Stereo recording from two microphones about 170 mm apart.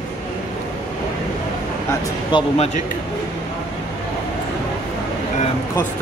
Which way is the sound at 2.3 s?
35° left (ahead or behind).